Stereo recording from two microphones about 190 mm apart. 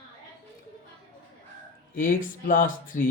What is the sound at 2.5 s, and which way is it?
Speech, 45° left (ahead or behind).